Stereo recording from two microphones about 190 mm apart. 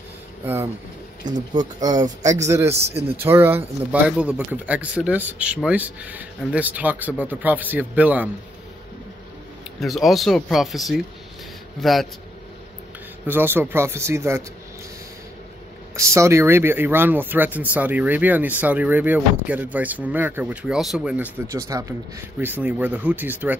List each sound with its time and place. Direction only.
1.2 s speech: 20° right (ahead or behind)
9.8 s speech: centre (ahead or behind)
13.3 s speech: 10° right (ahead or behind)
16.0 s speech: 15° right (ahead or behind)